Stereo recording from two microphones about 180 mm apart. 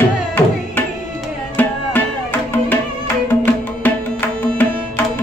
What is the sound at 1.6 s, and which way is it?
Music, 10° left (ahead or behind).